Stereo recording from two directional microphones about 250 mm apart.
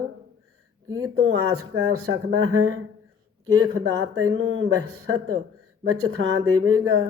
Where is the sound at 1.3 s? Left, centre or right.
Right.